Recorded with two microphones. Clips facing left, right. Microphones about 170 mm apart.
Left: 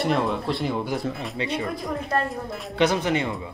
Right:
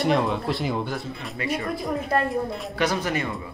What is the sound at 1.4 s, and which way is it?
Speech, 25° left (ahead or behind).